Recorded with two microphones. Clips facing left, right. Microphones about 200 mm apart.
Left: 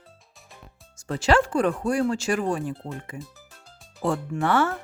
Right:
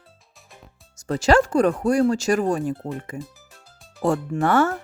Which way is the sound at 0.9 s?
40° right (ahead or behind).